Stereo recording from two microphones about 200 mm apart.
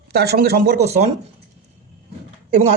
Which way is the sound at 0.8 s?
35° right (ahead or behind).